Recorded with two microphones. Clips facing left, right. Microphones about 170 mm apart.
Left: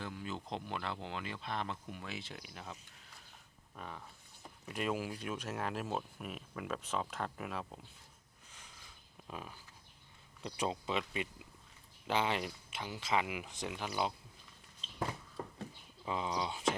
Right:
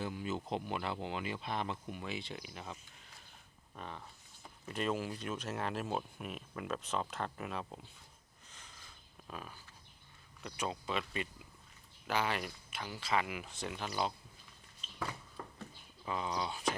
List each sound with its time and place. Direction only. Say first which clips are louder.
0.0 s speech: right 4 dB; 5° right (ahead or behind)
3.8 s speech: right 1 dB; 5° left (ahead or behind)
8.5 s a sound: right 1 dB; 10° left (ahead or behind)
10.4 s speech: left 2 dB; 25° left (ahead or behind)
15.4 s a sound: left 4 dB; 20° left (ahead or behind)
16.0 s speech: left 1 dB; 20° left (ahead or behind)